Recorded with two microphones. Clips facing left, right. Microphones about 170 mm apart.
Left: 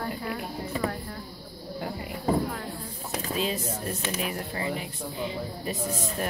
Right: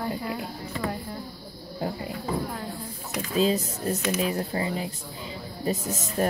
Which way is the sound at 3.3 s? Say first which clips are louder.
Right 8 dB; 35° right (ahead or behind).